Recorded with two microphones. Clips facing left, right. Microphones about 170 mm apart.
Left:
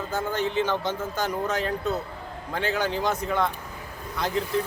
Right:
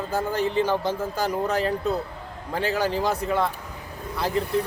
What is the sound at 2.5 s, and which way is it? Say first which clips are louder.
A man's voice: right 2 dB; 5° right (ahead or behind).